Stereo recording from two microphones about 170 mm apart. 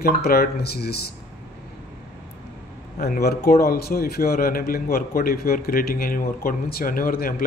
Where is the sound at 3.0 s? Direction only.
65° left (ahead or behind).